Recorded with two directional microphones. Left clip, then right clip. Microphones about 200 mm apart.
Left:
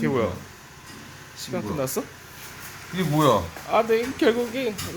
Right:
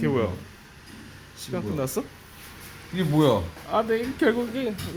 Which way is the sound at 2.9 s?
15° right (ahead or behind).